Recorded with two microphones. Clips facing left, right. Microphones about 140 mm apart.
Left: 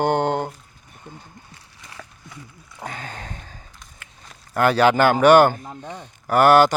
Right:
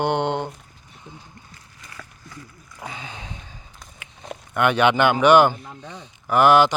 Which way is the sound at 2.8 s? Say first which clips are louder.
Left 2 dB; 50° left (ahead or behind).